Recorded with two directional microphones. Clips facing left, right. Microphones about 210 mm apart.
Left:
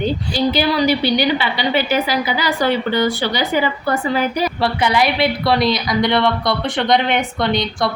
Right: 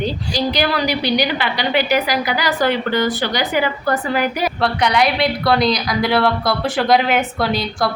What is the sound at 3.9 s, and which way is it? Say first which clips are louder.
A woman's voice: even; centre (ahead or behind).